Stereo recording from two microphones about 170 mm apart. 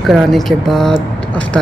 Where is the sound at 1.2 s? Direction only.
5° left (ahead or behind).